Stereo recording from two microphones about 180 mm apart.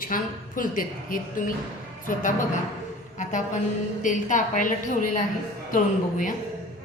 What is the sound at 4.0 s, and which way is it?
A woman's voice, 45° left (ahead or behind).